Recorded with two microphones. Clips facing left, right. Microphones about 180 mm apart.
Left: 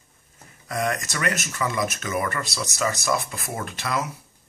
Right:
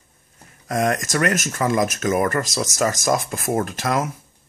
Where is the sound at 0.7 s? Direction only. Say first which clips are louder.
Right 5 dB; 45° right (ahead or behind).